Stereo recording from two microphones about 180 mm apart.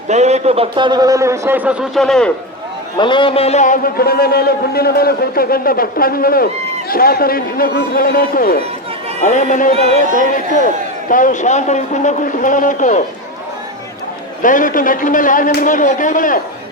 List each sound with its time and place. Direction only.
0.1 s a man's voice: 40° right (ahead or behind); by 2.3 s 5° left (ahead or behind)
3.0 s a man's voice: 25° left (ahead or behind); by 8.5 s 50° left (ahead or behind)
9.2 s a man's voice: 40° left (ahead or behind)
9.7 s speech: 35° right (ahead or behind)
10.3 s a man's voice: 45° left (ahead or behind)
14.4 s a man's voice: 45° left (ahead or behind)